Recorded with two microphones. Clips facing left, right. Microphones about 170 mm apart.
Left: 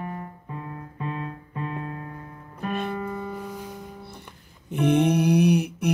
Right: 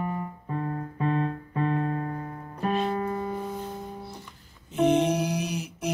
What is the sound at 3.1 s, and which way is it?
Music, 30° right (ahead or behind).